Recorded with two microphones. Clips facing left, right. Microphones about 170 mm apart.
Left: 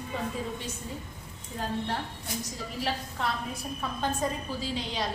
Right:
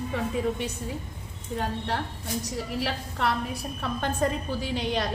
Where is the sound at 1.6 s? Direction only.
70° right (ahead or behind).